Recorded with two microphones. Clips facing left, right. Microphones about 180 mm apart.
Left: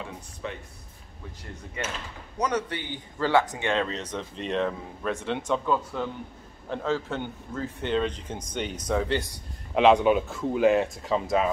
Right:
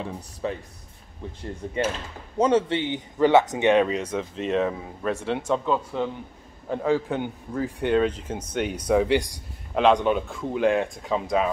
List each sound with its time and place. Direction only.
0.4 s speech: 35° right (ahead or behind)
2.3 s a man's voice: 25° right (ahead or behind)
9.8 s speech: 5° left (ahead or behind)